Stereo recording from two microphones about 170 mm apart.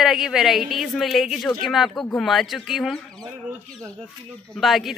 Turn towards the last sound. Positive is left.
turn(degrees=0)  # may be behind; listen again after turning